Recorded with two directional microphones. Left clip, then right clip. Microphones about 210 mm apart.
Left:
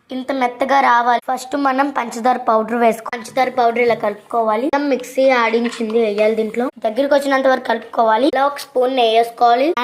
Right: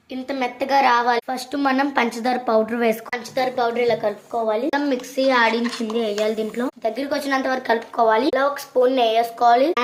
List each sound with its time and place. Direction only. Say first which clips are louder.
0.3 s a woman's voice: left 6 dB; 15° left (ahead or behind)
1.5 s a woman's voice: left 2 dB; centre (ahead or behind)
2.9 s a woman's voice: left 3 dB; 20° left (ahead or behind)
4.7 s a woman's voice: left 5 dB; 10° left (ahead or behind)